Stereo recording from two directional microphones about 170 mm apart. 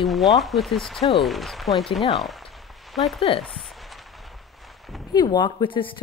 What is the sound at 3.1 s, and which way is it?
Speech, 30° left (ahead or behind).